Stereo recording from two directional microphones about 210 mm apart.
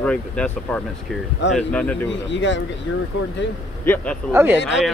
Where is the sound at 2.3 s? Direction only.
60° left (ahead or behind).